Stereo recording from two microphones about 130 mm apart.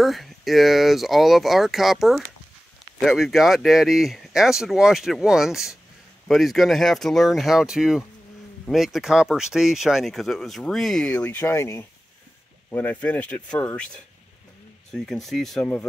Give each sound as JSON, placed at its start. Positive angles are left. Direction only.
{"t": 0.0, "sound": "speech", "side_deg": 0}
{"t": 11.1, "sound": "speech", "side_deg": 15}
{"t": 15.6, "sound": "speech", "side_deg": 15}